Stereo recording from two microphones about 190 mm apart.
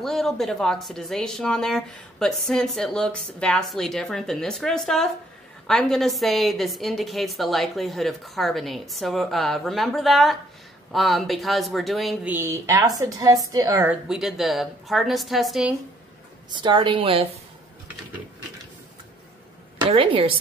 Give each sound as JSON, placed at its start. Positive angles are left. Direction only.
{"t": 0.0, "sound": "speech", "side_deg": 0}
{"t": 12.4, "sound": "speech", "side_deg": -15}
{"t": 14.0, "sound": "speech", "side_deg": 0}
{"t": 16.4, "sound": "a woman's voice", "side_deg": -25}
{"t": 19.8, "sound": "a woman's voice", "side_deg": -30}